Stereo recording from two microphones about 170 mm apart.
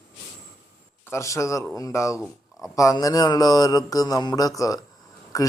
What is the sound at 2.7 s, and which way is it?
Mantra, 20° left (ahead or behind).